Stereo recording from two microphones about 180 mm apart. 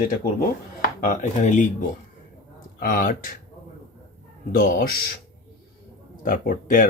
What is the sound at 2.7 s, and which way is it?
Speech, 50° left (ahead or behind).